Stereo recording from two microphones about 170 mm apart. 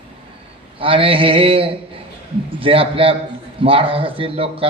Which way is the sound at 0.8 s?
30° right (ahead or behind).